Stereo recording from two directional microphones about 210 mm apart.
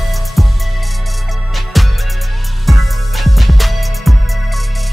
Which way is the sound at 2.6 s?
Centre (ahead or behind).